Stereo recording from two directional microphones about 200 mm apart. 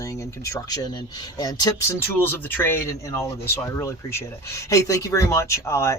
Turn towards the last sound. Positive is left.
turn(degrees=15)  # may be behind; listen again after turning